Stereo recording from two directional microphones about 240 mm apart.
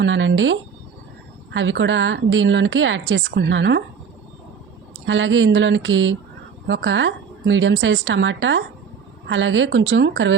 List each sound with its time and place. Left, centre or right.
0.0 s a woman's voice: right
5.0 s a woman's voice: right